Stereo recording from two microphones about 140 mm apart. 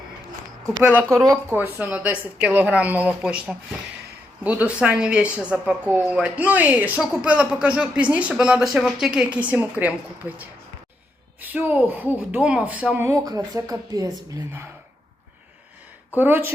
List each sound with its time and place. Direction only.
0.8 s a woman's voice: 5° right (ahead or behind)
1.5 s a woman's voice: 15° right (ahead or behind)
13.1 s a woman's voice: 25° right (ahead or behind)
16.1 s a woman's voice: 15° right (ahead or behind)